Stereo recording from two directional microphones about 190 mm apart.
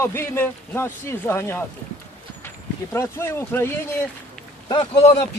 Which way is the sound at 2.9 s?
15° left (ahead or behind).